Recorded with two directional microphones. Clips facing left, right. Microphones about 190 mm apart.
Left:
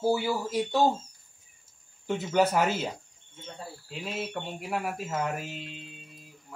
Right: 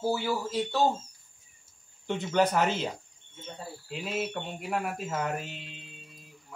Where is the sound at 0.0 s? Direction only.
10° left (ahead or behind).